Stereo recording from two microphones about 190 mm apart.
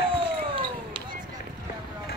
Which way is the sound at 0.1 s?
25° right (ahead or behind).